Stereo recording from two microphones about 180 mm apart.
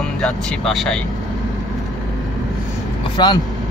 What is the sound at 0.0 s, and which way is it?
Speech, 5° left (ahead or behind).